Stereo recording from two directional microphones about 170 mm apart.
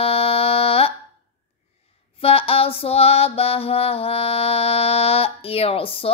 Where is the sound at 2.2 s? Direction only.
35° left (ahead or behind).